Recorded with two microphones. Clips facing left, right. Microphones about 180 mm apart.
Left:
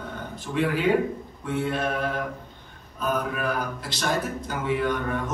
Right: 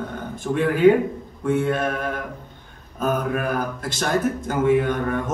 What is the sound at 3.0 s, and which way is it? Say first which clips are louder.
Speech: right 4 dB; 50° right (ahead or behind).